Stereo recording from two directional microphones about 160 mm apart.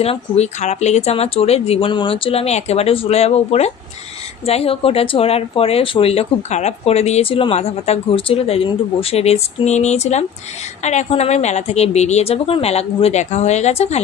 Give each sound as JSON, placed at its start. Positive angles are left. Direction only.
{"t": 0.0, "sound": "a woman's voice", "side_deg": 40}